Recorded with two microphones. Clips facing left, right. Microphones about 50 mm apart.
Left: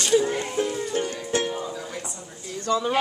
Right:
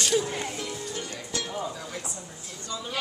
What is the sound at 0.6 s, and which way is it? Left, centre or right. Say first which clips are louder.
Music: left 9 dB; left.